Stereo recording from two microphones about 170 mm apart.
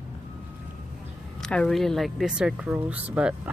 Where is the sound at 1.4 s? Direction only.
5° left (ahead or behind).